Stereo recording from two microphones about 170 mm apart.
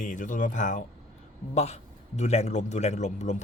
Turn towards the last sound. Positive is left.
turn(degrees=45)  # may be behind; listen again after turning